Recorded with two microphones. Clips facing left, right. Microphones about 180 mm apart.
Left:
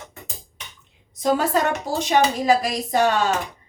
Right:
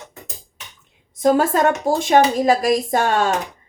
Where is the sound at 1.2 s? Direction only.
50° right (ahead or behind).